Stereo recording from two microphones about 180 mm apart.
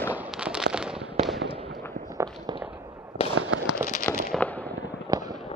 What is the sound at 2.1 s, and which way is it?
Walk, 20° right (ahead or behind).